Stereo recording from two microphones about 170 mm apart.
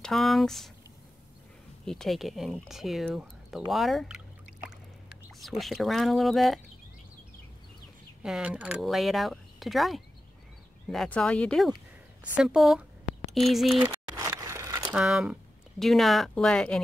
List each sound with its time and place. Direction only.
0.0 s speech: centre (ahead or behind)
1.9 s speech: centre (ahead or behind)
5.4 s speech: centre (ahead or behind)
8.2 s speech: 5° right (ahead or behind)
13.8 s a sound: 20° right (ahead or behind)
15.0 s speech: 5° right (ahead or behind)